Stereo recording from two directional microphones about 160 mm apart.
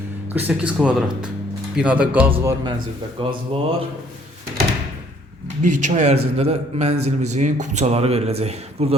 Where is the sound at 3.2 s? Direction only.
30° right (ahead or behind).